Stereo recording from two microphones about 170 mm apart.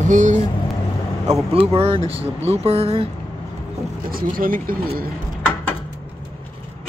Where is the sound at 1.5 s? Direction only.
35° right (ahead or behind).